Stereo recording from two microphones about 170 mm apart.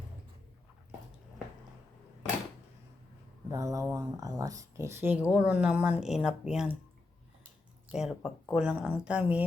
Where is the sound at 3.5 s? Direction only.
20° right (ahead or behind); by 6.8 s 5° right (ahead or behind).